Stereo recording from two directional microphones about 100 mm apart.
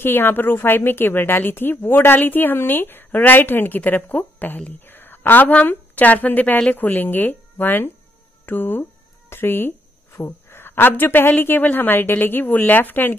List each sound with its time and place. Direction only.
0.0 s a woman's voice: 20° left (ahead or behind)